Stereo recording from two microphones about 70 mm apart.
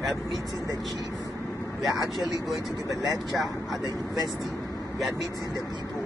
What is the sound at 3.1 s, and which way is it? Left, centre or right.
Speech, centre.